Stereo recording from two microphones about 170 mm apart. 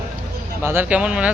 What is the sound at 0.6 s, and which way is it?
Speech, 15° right (ahead or behind).